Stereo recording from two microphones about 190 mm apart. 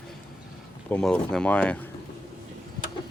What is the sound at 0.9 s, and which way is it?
Speech, 5° left (ahead or behind).